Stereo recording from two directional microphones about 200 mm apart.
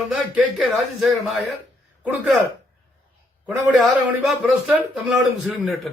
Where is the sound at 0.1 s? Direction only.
5° right (ahead or behind).